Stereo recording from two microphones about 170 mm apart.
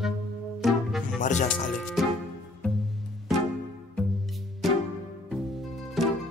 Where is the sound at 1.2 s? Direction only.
45° left (ahead or behind).